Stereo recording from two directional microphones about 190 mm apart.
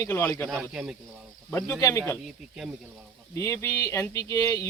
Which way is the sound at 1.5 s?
15° left (ahead or behind).